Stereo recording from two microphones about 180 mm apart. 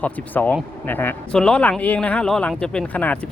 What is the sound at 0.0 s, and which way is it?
Speech, 10° left (ahead or behind).